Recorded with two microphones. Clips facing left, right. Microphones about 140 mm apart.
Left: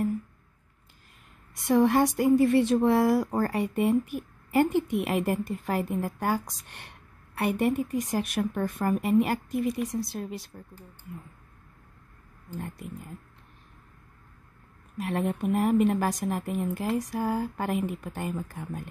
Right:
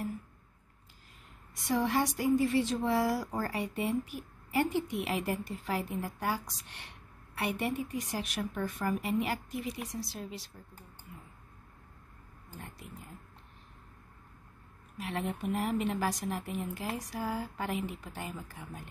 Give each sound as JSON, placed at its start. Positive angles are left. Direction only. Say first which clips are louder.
{"t": 1.5, "sound": "a woman's voice", "louder": "left 8 dB", "side_deg": 55}
{"t": 15.0, "sound": "a woman's voice", "louder": "left 7 dB", "side_deg": 50}